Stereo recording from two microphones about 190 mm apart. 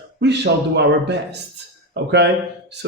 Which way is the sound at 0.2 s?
65° right (ahead or behind).